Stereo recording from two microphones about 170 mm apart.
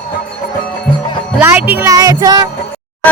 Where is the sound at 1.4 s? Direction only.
10° right (ahead or behind).